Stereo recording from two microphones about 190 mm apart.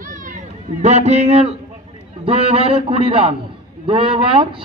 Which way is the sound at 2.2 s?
30° right (ahead or behind).